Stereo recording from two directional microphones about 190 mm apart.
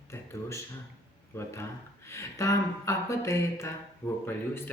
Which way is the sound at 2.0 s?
15° left (ahead or behind).